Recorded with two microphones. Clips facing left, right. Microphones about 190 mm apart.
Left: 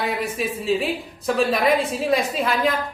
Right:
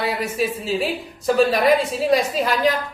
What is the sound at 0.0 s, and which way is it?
A woman's voice, centre (ahead or behind).